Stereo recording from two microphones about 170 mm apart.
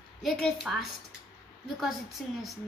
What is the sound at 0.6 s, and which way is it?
Speech, centre (ahead or behind).